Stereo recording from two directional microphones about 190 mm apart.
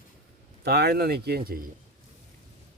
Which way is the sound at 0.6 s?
55° right (ahead or behind).